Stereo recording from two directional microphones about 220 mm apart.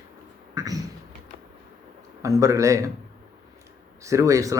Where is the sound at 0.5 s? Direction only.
15° right (ahead or behind).